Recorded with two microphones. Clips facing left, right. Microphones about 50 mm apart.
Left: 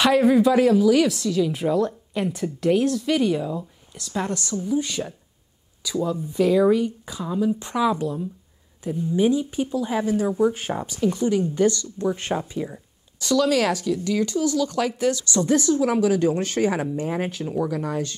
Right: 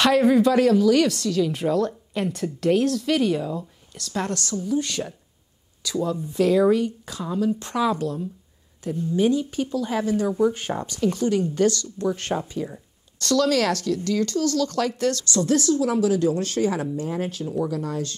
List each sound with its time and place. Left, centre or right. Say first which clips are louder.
0.0 s speech: even; centre
15.3 s a woman's voice: even; left